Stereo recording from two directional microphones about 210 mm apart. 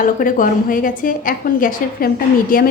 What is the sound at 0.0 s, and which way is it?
A woman's voice, 40° left (ahead or behind).